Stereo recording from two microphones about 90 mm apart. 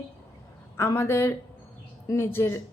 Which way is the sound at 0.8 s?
30° left (ahead or behind).